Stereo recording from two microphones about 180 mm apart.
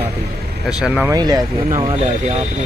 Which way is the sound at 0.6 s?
5° right (ahead or behind).